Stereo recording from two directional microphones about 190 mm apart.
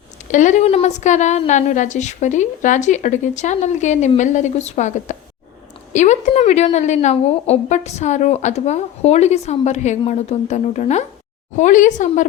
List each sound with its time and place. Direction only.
0.3 s a woman's voice: 40° left (ahead or behind)